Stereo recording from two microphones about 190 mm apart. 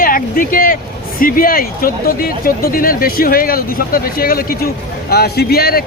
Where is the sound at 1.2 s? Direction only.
50° left (ahead or behind).